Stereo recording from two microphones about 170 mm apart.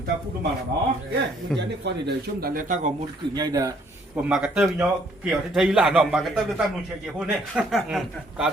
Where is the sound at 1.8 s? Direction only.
75° right (ahead or behind); by 2.9 s 50° right (ahead or behind).